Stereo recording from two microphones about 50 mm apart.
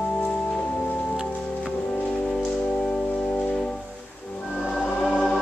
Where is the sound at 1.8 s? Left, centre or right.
Left.